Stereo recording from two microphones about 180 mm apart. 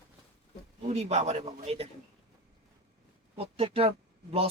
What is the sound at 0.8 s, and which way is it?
Speech, 35° right (ahead or behind).